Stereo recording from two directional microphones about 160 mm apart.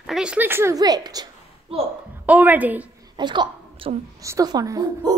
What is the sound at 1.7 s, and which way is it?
Speech, 35° right (ahead or behind).